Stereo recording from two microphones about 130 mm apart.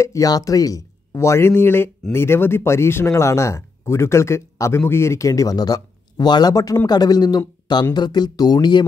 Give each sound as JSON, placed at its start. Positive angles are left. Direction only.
{"t": 0.0, "sound": "speech", "side_deg": 25}